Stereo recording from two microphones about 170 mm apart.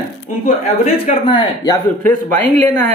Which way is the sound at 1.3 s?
25° left (ahead or behind).